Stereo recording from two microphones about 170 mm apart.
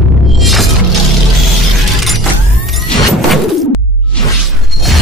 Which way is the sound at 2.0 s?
Centre (ahead or behind).